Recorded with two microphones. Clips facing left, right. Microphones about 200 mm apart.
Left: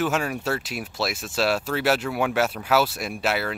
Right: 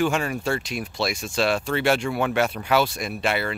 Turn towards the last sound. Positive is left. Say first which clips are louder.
# right 1 dB
turn(degrees=5)  # may be behind; listen again after turning